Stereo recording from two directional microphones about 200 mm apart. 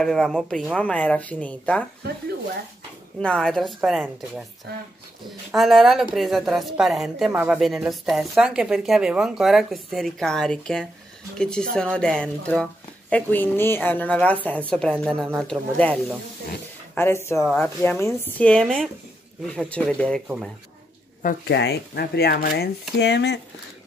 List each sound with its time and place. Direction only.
0.0 s a woman's voice: centre (ahead or behind)
3.2 s a woman's voice: 5° left (ahead or behind)
4.7 s speech: 50° right (ahead or behind)
5.5 s a woman's voice: centre (ahead or behind)
20.2 s a woman's voice: 5° right (ahead or behind)
21.2 s speech: 40° left (ahead or behind)
21.5 s speech: 55° left (ahead or behind)